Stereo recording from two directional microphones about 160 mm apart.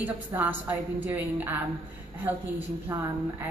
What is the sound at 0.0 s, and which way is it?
A woman's voice, 10° right (ahead or behind).